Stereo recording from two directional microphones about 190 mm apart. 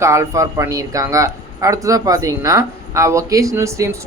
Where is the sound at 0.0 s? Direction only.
15° right (ahead or behind).